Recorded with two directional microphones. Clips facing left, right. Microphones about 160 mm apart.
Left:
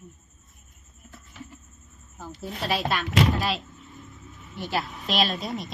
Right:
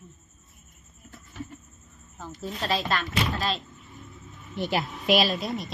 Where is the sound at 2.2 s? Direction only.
10° left (ahead or behind).